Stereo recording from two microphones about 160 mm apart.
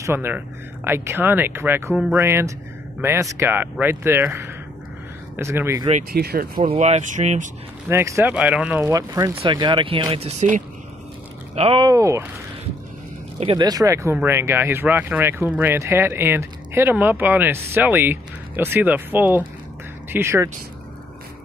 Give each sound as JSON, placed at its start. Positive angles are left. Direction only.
{"t": 0.0, "sound": "speech", "side_deg": -15}
{"t": 6.1, "sound": "speech", "side_deg": -70}
{"t": 6.6, "sound": "speech", "side_deg": -45}
{"t": 7.9, "sound": "speech", "side_deg": -15}
{"t": 8.8, "sound": "speech", "side_deg": -20}
{"t": 11.5, "sound": "speech", "side_deg": -40}
{"t": 11.8, "sound": "speech", "side_deg": -20}
{"t": 13.4, "sound": "speech", "side_deg": -35}
{"t": 13.7, "sound": "speech", "side_deg": -20}